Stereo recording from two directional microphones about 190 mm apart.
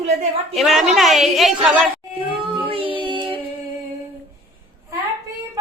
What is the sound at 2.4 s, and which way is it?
Child singing, 30° right (ahead or behind).